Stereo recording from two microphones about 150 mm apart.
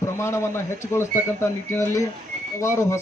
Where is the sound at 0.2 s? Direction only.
15° left (ahead or behind).